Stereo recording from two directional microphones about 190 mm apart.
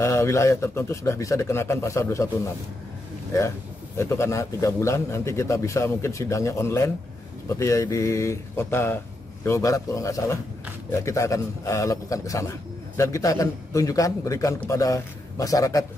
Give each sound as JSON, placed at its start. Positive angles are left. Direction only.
{"t": 0.0, "sound": "a man's voice", "side_deg": 15}